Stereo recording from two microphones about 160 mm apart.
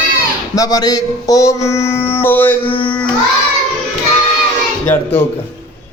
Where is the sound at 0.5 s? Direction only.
20° left (ahead or behind).